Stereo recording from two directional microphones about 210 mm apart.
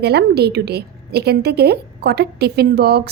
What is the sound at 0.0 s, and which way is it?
A woman's voice, 50° right (ahead or behind).